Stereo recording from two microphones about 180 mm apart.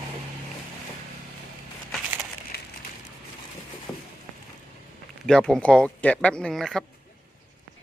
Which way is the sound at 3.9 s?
5° left (ahead or behind).